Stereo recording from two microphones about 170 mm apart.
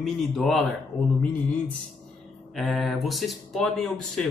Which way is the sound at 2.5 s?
Centre (ahead or behind).